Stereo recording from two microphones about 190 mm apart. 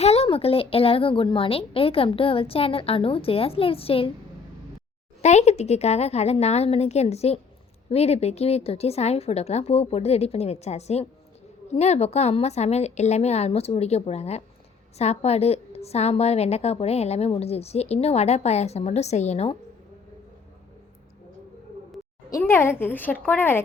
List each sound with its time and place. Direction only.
0.0 s speech: 35° left (ahead or behind)
5.2 s a woman's voice: 35° left (ahead or behind)
22.3 s speech: 15° left (ahead or behind)